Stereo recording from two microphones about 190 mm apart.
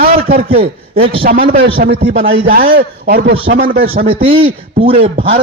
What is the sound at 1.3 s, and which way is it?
A man's voice, 50° right (ahead or behind).